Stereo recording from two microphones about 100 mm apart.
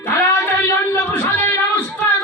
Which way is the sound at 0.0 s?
25° left (ahead or behind).